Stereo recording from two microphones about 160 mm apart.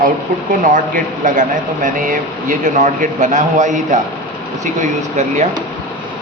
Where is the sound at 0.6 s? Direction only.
55° right (ahead or behind).